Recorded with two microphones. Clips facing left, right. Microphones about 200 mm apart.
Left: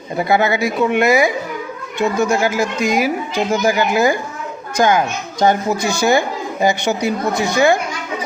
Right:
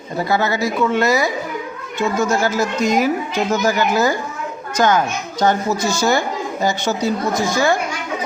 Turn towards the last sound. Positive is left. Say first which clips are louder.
# left 3 dB
turn(degrees=15)  # may be behind; listen again after turning